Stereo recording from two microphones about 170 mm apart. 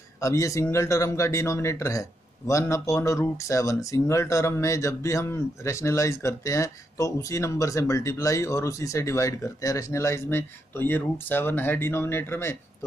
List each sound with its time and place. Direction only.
0.2 s speech: 20° left (ahead or behind)